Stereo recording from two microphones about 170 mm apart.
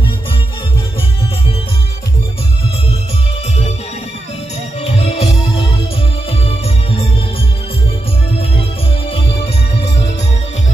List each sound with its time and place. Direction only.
4.8 s music: 35° left (ahead or behind)